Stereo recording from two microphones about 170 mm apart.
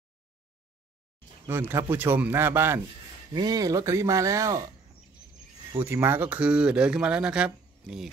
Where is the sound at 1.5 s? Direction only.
15° right (ahead or behind).